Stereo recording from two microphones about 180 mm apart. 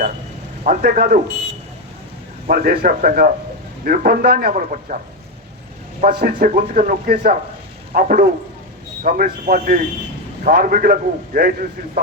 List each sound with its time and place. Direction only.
0.6 s speech: 50° right (ahead or behind)
2.5 s speech: 50° right (ahead or behind)
6.0 s speech: 50° right (ahead or behind)